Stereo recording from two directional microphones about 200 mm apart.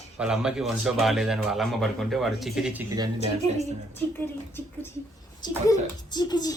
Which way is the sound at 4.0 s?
10° left (ahead or behind).